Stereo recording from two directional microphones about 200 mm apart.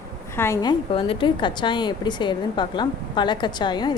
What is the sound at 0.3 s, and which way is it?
A woman's voice, 15° left (ahead or behind).